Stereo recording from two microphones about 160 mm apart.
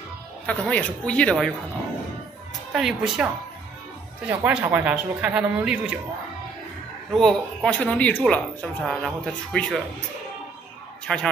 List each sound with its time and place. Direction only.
0.5 s speech: 10° left (ahead or behind)
2.7 s speech: 5° right (ahead or behind)
4.3 s speech: 10° right (ahead or behind)
7.2 s speech: 5° left (ahead or behind)
11.1 s speech: 5° left (ahead or behind)